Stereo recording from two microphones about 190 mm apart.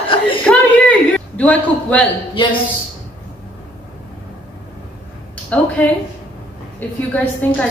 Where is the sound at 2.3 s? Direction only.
25° left (ahead or behind).